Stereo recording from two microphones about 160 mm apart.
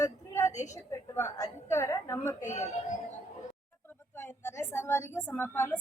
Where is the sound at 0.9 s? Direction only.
20° left (ahead or behind).